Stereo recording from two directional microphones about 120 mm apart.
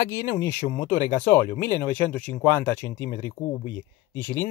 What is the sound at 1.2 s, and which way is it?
Speech, 20° left (ahead or behind).